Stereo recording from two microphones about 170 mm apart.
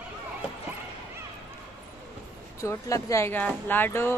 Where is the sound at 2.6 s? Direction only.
20° left (ahead or behind).